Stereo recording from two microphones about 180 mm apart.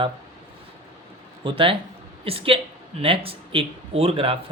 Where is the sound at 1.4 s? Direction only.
30° right (ahead or behind).